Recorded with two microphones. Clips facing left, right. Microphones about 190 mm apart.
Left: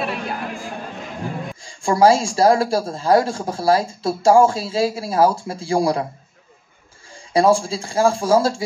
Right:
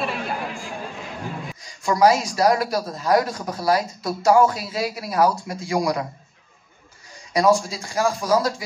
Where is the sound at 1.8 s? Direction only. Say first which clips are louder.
Left 3 dB; 30° left (ahead or behind).